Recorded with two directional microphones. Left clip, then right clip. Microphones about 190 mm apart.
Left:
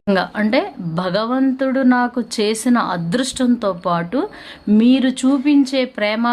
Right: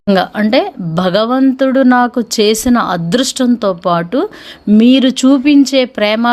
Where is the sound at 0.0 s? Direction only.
25° right (ahead or behind).